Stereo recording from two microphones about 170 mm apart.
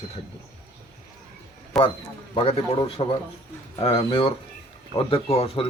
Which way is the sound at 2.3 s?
30° left (ahead or behind).